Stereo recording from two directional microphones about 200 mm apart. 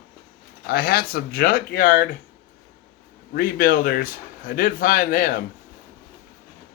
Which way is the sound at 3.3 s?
45° left (ahead or behind).